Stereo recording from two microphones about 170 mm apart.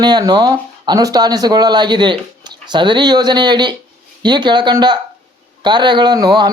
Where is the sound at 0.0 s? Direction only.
25° right (ahead or behind).